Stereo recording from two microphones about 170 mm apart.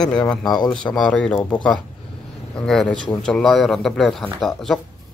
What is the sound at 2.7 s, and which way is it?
Speech, 5° left (ahead or behind).